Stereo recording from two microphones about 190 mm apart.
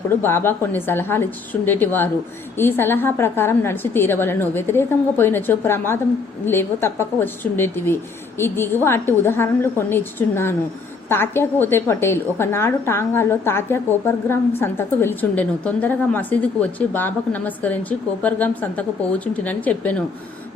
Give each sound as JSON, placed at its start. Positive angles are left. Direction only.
{"t": 0.1, "sound": "a woman's voice", "side_deg": 10}